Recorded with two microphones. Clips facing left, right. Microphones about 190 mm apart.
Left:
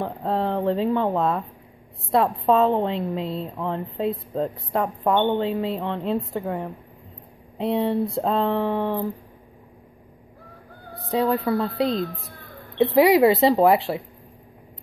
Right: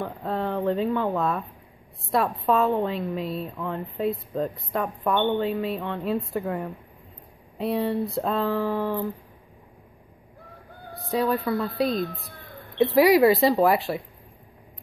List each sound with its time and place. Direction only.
0.0 s a woman's voice: 30° left (ahead or behind)
11.1 s a woman's voice: 25° left (ahead or behind)